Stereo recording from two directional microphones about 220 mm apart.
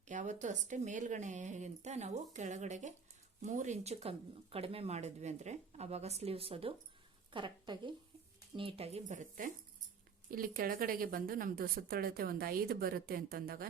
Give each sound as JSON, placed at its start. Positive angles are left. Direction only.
{"t": 0.1, "sound": "a woman's voice", "side_deg": -35}